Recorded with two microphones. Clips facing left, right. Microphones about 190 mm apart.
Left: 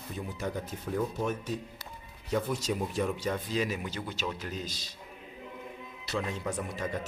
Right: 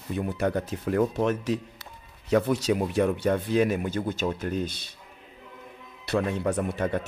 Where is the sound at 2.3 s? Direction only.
70° right (ahead or behind).